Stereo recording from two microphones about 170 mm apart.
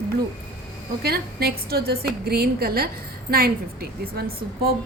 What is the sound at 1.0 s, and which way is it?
A woman's voice, 65° right (ahead or behind).